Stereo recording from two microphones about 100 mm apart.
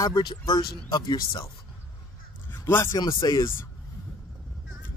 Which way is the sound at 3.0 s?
50° left (ahead or behind).